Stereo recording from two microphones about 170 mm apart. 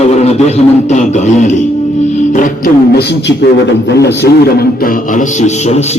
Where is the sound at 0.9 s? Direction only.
45° left (ahead or behind).